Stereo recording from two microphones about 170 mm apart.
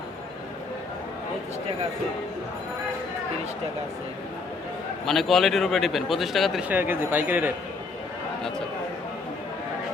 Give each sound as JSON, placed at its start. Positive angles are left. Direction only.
{"t": 5.0, "sound": "a man's voice", "side_deg": 0}